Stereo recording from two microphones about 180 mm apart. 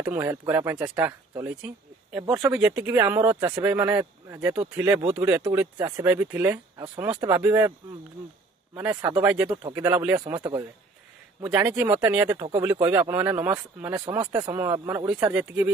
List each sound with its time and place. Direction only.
0.0 s speech: 15° right (ahead or behind)
9.8 s speech: 15° right (ahead or behind)
10.2 s speech: 25° right (ahead or behind)
11.4 s speech: 10° right (ahead or behind)
12.8 s speech: 10° right (ahead or behind)